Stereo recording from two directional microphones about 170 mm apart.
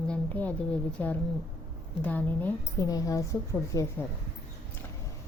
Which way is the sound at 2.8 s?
20° left (ahead or behind).